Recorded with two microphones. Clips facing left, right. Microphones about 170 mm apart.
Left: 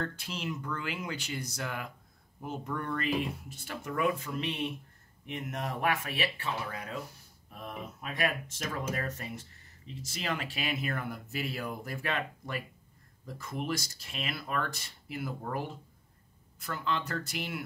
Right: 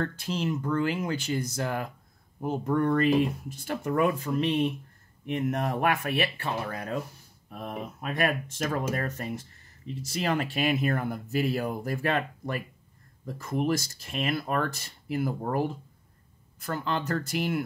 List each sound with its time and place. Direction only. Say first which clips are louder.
0.4 s speech: right 10 dB; 40° right (ahead or behind)
5.2 s speech: right 9 dB; 55° right (ahead or behind)